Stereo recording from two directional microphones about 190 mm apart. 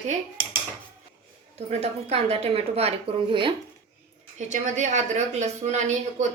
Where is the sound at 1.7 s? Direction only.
35° right (ahead or behind).